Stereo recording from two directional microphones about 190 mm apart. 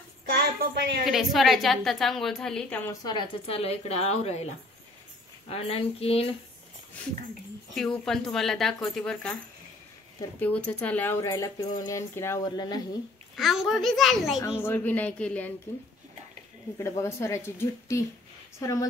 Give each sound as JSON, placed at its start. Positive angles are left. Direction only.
{"t": 0.3, "sound": "a sound", "side_deg": -55}
{"t": 1.0, "sound": "a woman's voice", "side_deg": 0}
{"t": 5.5, "sound": "speech", "side_deg": 30}
{"t": 7.7, "sound": "a woman's voice", "side_deg": 0}
{"t": 10.4, "sound": "speech", "side_deg": 5}
{"t": 13.4, "sound": "a woman's voice", "side_deg": 0}
{"t": 14.6, "sound": "speech", "side_deg": 10}
{"t": 17.0, "sound": "speech", "side_deg": 15}